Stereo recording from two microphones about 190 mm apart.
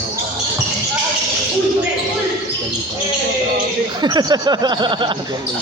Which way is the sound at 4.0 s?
20° right (ahead or behind).